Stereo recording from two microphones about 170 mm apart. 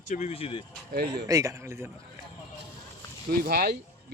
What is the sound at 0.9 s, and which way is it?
Speech, 70° right (ahead or behind).